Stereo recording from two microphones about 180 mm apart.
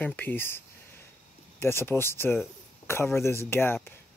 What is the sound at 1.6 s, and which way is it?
Speech, 15° left (ahead or behind).